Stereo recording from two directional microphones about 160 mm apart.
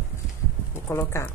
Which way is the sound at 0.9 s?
15° left (ahead or behind).